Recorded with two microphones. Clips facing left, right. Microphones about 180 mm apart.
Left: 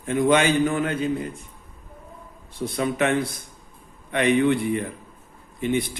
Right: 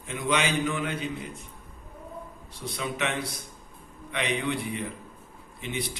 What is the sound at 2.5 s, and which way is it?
A man's voice, 50° left (ahead or behind).